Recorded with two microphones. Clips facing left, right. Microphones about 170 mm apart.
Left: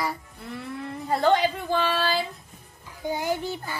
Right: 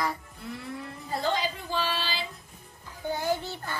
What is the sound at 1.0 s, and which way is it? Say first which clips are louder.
A woman's voice: left 8 dB; 65° left (ahead or behind).